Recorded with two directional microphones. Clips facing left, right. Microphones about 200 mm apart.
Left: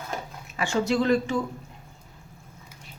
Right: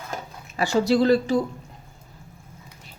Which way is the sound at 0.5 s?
35° right (ahead or behind).